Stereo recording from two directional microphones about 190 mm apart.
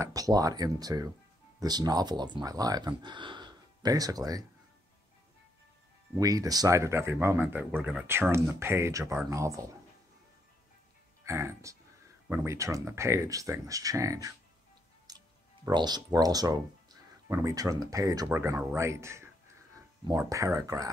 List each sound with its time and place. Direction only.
0.0 s speech: 20° right (ahead or behind)
6.1 s speech: 20° right (ahead or behind)
11.2 s speech: 15° right (ahead or behind)